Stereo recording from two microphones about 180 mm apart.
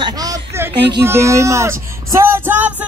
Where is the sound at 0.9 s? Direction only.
15° right (ahead or behind).